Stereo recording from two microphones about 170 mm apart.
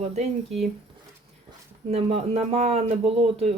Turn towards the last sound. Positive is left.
turn(degrees=-40)  # may be behind; listen again after turning